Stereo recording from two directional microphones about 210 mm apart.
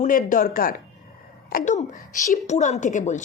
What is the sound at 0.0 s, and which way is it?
A woman's voice, 40° left (ahead or behind).